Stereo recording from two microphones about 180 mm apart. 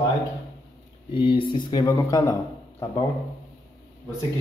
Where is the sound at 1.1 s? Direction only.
30° left (ahead or behind).